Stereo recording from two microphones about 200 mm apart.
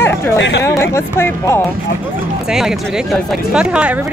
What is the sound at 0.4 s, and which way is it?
Speech, 60° left (ahead or behind).